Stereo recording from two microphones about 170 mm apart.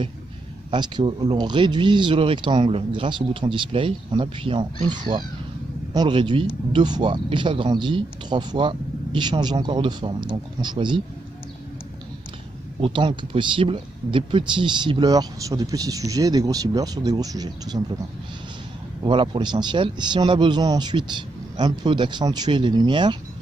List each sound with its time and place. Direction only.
0.7 s speech: 25° right (ahead or behind)
12.8 s speech: 30° right (ahead or behind)
19.0 s speech: 30° right (ahead or behind)